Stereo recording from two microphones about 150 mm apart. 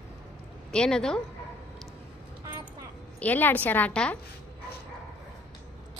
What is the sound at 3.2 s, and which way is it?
Speech, 10° left (ahead or behind).